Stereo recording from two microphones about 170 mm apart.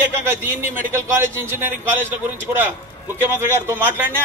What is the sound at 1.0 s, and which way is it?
Speech, 15° right (ahead or behind).